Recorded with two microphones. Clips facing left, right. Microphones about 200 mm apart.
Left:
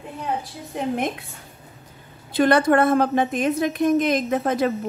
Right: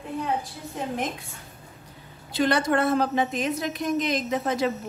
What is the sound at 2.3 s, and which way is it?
A woman's voice, 55° left (ahead or behind).